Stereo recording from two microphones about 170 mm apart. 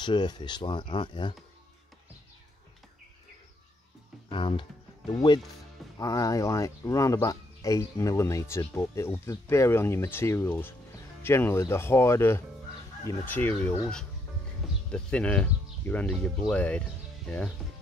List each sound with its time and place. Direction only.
0.0 s speech: 25° left (ahead or behind)
4.3 s music: 30° left (ahead or behind)
5.1 s speech: 25° left (ahead or behind); by 13.7 s 10° left (ahead or behind)
14.9 s speech: 5° left (ahead or behind)